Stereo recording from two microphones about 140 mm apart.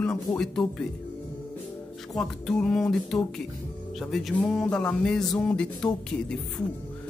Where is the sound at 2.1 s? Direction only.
5° left (ahead or behind).